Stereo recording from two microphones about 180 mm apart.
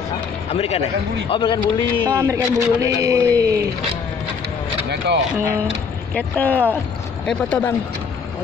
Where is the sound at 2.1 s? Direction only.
15° right (ahead or behind).